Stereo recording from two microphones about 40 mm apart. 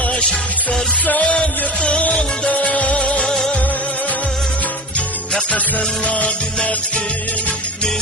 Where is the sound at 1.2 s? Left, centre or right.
Left.